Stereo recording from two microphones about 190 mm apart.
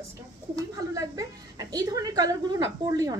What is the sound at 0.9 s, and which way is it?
A woman's voice, 20° right (ahead or behind).